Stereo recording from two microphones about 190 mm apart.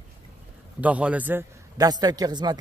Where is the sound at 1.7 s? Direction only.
20° right (ahead or behind).